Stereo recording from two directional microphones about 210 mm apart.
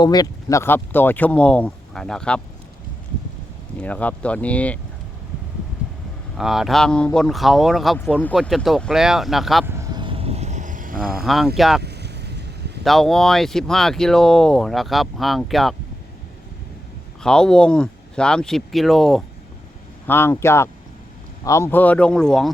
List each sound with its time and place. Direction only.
0.0 s speech: 20° left (ahead or behind)
3.8 s speech: 5° left (ahead or behind)
6.3 s speech: centre (ahead or behind)
9.6 s vehicle: 15° right (ahead or behind); by 11.0 s 40° right (ahead or behind)
11.2 s speech: centre (ahead or behind)
11.8 s vehicle: 50° right (ahead or behind)
12.8 s speech: centre (ahead or behind)
17.2 s speech: 5° left (ahead or behind)
20.1 s speech: 10° left (ahead or behind)